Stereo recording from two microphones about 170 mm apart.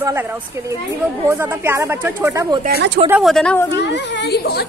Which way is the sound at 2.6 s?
70° right (ahead or behind).